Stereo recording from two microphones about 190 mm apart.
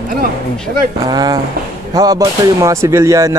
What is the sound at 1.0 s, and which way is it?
Speech, 20° right (ahead or behind).